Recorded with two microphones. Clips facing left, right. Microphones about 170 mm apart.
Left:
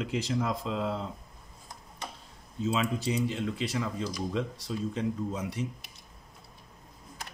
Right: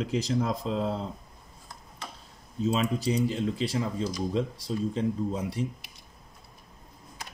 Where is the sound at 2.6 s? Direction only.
35° right (ahead or behind).